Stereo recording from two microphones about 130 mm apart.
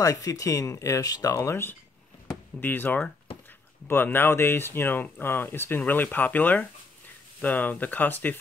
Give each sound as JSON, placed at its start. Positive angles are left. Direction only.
{"t": 0.0, "sound": "speech", "side_deg": 25}